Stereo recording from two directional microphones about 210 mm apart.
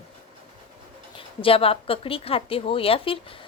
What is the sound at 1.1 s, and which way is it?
Speech, 25° left (ahead or behind).